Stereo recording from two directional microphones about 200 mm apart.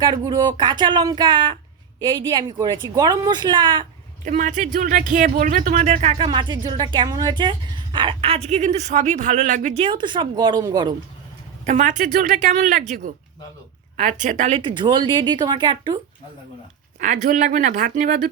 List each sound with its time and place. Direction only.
0.0 s a woman's voice: 20° right (ahead or behind)
4.3 s speech: 40° right (ahead or behind); by 10.9 s 20° right (ahead or behind)
11.6 s a woman's voice: 35° right (ahead or behind)
17.0 s speech: 40° right (ahead or behind)